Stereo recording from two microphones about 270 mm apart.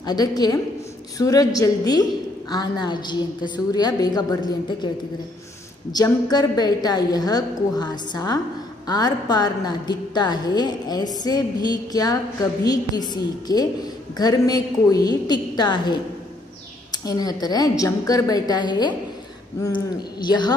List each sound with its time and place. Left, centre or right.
0.0 s a woman's voice: centre
5.9 s a woman's voice: centre